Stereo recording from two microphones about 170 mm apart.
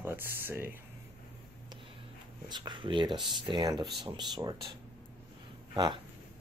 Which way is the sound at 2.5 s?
25° right (ahead or behind).